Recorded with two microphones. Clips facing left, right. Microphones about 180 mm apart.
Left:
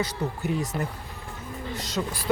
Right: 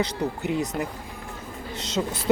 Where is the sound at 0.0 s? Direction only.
20° right (ahead or behind).